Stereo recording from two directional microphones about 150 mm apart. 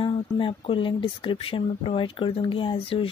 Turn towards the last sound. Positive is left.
turn(degrees=35)  # may be behind; listen again after turning